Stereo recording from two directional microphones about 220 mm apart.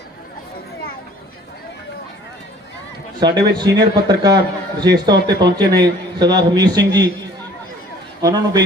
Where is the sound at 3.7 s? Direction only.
20° right (ahead or behind).